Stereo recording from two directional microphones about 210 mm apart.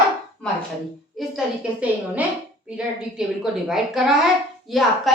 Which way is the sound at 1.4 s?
5° right (ahead or behind).